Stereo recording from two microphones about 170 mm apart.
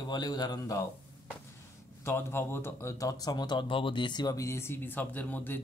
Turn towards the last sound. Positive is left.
turn(degrees=10)  # may be behind; listen again after turning